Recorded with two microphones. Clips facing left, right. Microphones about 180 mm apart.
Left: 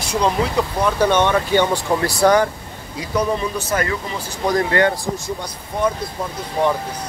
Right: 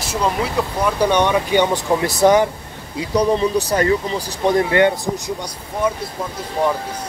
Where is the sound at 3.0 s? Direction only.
35° right (ahead or behind).